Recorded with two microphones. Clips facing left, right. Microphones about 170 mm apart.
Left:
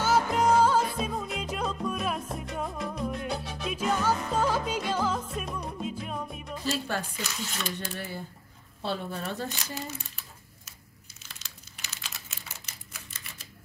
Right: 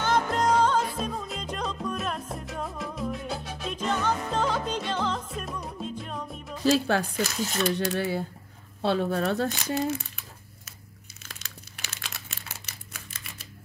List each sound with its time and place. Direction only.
0.0 s music: 5° left (ahead or behind)
2.2 s salsa music: centre (ahead or behind)
6.6 s speech: 80° right
7.0 s speech: 45° right (ahead or behind)
7.6 s speech: 75° right (ahead or behind)
11.2 s crumpling: 55° right (ahead or behind)